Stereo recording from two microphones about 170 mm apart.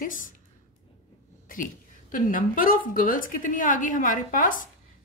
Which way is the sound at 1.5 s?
55° left (ahead or behind).